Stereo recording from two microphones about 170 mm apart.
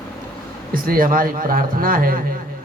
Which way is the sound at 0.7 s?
60° right (ahead or behind).